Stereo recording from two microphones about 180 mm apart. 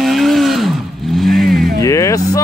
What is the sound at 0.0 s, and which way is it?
Vehicle, centre (ahead or behind).